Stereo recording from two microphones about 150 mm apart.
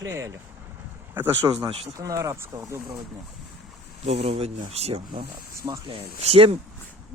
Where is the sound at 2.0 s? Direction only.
20° right (ahead or behind).